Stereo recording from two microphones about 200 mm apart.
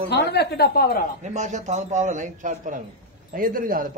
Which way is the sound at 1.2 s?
35° right (ahead or behind).